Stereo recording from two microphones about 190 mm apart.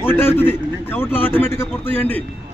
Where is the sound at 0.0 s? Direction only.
10° left (ahead or behind).